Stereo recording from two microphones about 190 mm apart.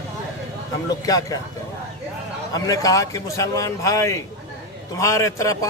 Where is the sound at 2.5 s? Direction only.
20° left (ahead or behind).